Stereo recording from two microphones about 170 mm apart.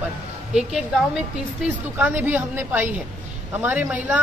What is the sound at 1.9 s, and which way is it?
Speech, 10° right (ahead or behind).